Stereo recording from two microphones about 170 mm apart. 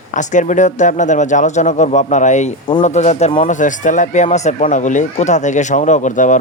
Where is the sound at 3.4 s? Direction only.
50° left (ahead or behind).